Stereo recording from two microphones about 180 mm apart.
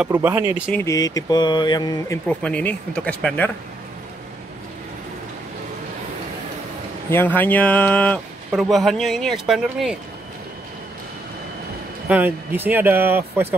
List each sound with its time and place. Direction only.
0.0 s speech: 10° right (ahead or behind)
0.7 s speech: 15° left (ahead or behind)
2.2 s speech: 5° left (ahead or behind)
7.1 s speech: 10° left (ahead or behind)
12.1 s speech: 10° right (ahead or behind)